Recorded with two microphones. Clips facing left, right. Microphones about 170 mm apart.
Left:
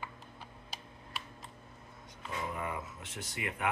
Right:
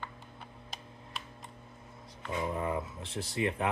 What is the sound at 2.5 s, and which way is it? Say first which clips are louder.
Speech: right 5 dB; 30° right (ahead or behind).